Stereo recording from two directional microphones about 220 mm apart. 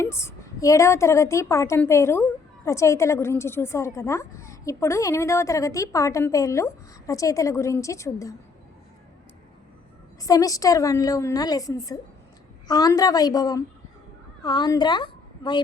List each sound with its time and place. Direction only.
0.0 s a woman's voice: 10° left (ahead or behind)
10.2 s a woman's voice: 15° left (ahead or behind)